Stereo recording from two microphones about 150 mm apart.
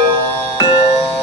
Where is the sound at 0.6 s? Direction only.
40° left (ahead or behind).